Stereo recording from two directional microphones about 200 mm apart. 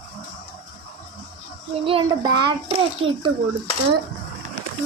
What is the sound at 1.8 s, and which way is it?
A child's voice, 25° right (ahead or behind).